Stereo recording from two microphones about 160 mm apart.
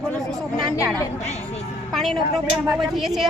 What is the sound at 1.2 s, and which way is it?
Speech, 40° left (ahead or behind).